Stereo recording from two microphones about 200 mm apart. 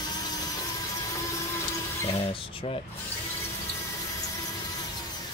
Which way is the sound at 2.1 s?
30° left (ahead or behind).